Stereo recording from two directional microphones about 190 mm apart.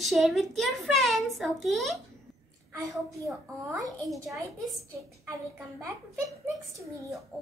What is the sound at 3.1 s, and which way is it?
A child's voice, 15° right (ahead or behind).